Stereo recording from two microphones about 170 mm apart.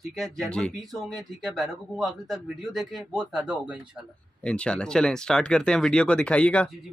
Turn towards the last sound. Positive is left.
turn(degrees=5)  # may be behind; listen again after turning